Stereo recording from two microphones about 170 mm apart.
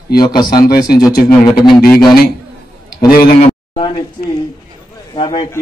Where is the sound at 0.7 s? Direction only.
60° left (ahead or behind).